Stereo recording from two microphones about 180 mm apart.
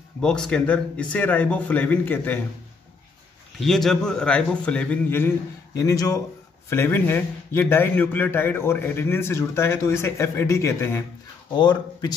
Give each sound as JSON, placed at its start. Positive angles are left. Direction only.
{"t": 0.2, "sound": "a man's voice", "side_deg": 5}
{"t": 3.5, "sound": "a man's voice", "side_deg": 0}
{"t": 11.5, "sound": "speech", "side_deg": 25}